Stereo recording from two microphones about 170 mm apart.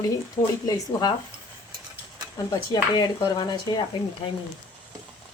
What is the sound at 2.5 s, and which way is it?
Speech, 25° left (ahead or behind).